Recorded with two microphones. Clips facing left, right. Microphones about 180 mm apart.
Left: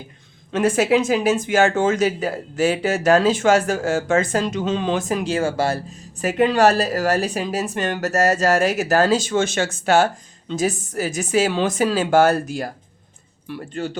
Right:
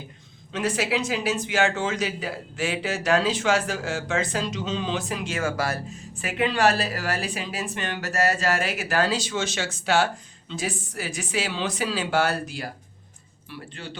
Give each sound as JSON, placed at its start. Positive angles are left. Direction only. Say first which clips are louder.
{"t": 0.5, "sound": "speech", "louder": "left 8 dB", "side_deg": 50}
{"t": 5.3, "sound": "speech", "louder": "left 5 dB", "side_deg": 30}
{"t": 6.1, "sound": "speech", "louder": "left 8 dB", "side_deg": 40}